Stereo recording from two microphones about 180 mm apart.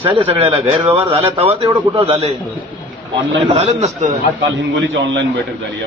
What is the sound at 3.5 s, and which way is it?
Speech, 35° right (ahead or behind).